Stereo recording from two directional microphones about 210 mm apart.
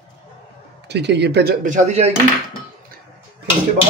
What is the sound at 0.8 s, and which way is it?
Speech, 55° right (ahead or behind).